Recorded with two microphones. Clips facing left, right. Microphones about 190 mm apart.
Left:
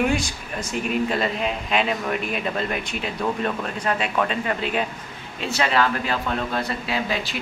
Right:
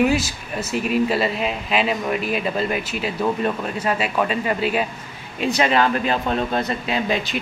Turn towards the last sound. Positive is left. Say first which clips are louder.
# right 3 dB
turn(degrees=-20)  # may be behind; listen again after turning